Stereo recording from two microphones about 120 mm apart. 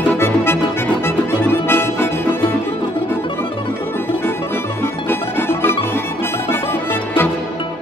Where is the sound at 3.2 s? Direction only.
45° left (ahead or behind).